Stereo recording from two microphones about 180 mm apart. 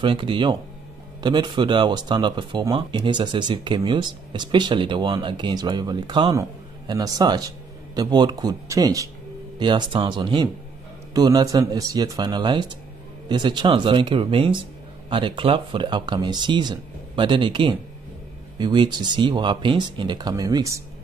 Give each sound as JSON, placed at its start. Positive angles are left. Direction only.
{"t": 0.0, "sound": "speech", "side_deg": -25}